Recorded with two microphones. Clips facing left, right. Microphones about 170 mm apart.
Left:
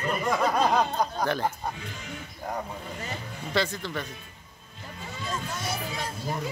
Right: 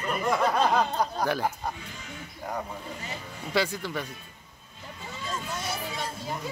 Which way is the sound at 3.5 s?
10° right (ahead or behind).